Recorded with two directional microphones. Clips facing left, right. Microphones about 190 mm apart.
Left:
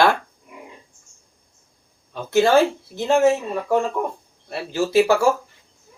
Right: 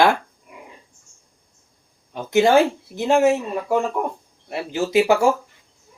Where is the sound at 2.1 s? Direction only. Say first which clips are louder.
Right 1 dB; 15° right (ahead or behind).